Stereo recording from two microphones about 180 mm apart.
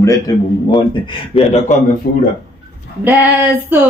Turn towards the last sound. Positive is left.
turn(degrees=-10)  # may be behind; listen again after turning